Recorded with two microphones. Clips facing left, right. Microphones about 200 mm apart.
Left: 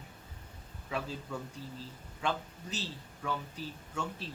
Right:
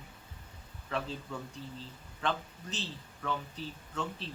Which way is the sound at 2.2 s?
10° left (ahead or behind).